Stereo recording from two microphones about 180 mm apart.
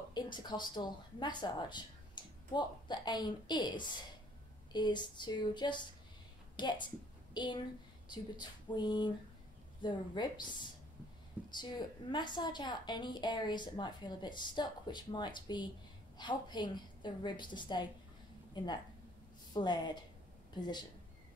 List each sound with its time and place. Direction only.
0.1 s a woman's voice: 25° left (ahead or behind)
11.4 s a sound: 10° right (ahead or behind)
12.1 s a woman's voice: 25° left (ahead or behind)